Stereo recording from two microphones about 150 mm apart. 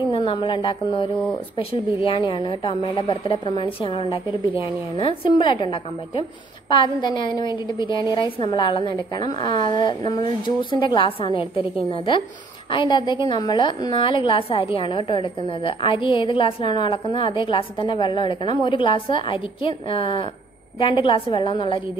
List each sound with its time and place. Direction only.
0.1 s a woman's voice: 35° left (ahead or behind)